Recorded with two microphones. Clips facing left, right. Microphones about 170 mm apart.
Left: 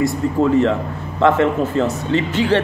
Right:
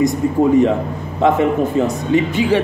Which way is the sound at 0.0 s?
15° right (ahead or behind).